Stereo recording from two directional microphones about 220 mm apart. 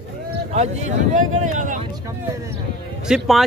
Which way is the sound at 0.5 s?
30° right (ahead or behind).